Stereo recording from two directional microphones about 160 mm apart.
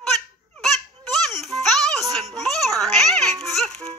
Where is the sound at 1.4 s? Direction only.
Centre (ahead or behind).